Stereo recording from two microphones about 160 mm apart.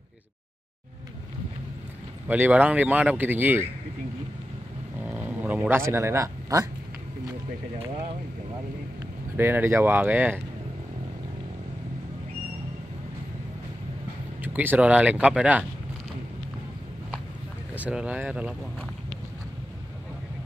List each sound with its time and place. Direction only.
2.2 s speech: 10° right (ahead or behind)
5.0 s speech: 10° right (ahead or behind)
9.4 s speech: 15° right (ahead or behind)
14.4 s speech: 10° right (ahead or behind)
17.7 s speech: 10° right (ahead or behind)